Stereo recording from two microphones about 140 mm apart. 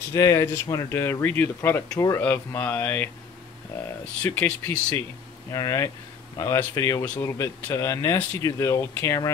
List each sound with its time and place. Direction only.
0.1 s speech: 25° left (ahead or behind)
4.2 s speech: 10° left (ahead or behind)
5.5 s speech: 25° left (ahead or behind)